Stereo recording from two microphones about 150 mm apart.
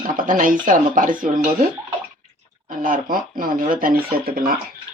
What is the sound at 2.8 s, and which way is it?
Speech, 65° right (ahead or behind).